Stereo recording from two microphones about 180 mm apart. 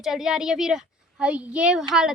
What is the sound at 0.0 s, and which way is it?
Speech, centre (ahead or behind).